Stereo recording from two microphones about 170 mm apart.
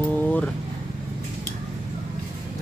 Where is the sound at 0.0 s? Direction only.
10° left (ahead or behind).